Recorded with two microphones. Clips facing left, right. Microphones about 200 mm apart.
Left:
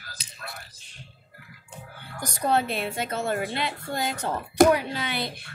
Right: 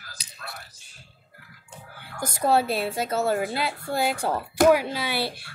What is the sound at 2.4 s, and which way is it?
Speech, 5° right (ahead or behind).